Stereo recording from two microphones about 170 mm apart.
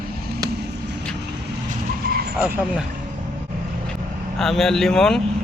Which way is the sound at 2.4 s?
10° right (ahead or behind).